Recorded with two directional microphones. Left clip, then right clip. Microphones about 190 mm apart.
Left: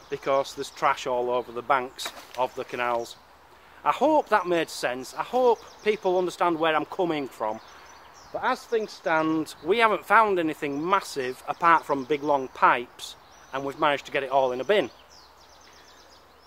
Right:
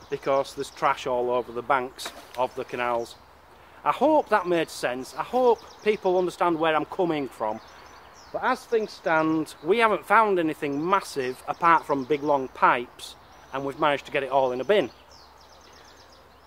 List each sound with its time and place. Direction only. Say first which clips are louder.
0.1 s speech: even; 15° left (ahead or behind)